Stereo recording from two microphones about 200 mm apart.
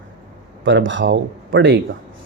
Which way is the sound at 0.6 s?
70° right (ahead or behind).